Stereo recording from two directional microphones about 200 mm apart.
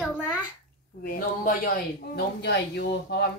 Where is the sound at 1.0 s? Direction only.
45° left (ahead or behind).